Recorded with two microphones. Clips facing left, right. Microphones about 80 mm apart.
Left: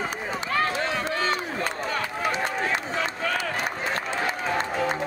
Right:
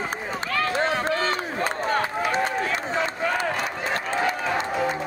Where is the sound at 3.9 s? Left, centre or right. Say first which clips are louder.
Right 1 dB; right.